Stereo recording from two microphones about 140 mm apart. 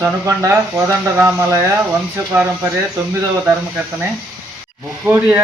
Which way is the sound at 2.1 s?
10° right (ahead or behind).